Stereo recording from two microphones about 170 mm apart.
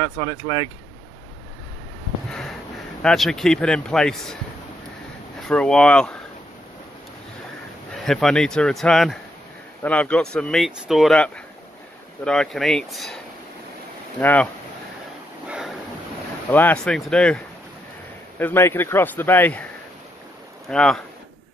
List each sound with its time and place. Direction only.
0.0 s speech: 20° left (ahead or behind)
3.0 s a man's voice: 5° left (ahead or behind)
5.5 s a man's voice: 5° left (ahead or behind)
8.0 s a man's voice: 5° left (ahead or behind)
14.2 s speech: 10° left (ahead or behind)
15.4 s dog: 5° right (ahead or behind)
16.4 s a man's voice: 10° left (ahead or behind)
18.4 s speech: 15° left (ahead or behind)
20.6 s a man's voice: 5° left (ahead or behind)